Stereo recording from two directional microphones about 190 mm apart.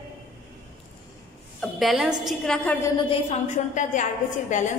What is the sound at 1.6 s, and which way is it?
A woman's voice, centre (ahead or behind).